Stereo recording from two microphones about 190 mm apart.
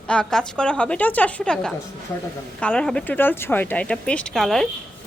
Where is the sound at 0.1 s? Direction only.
5° left (ahead or behind).